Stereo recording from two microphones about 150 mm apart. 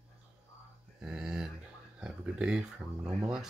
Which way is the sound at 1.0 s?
5° right (ahead or behind).